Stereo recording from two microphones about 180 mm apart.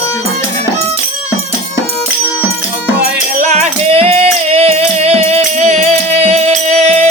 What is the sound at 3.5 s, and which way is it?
Music, 35° right (ahead or behind).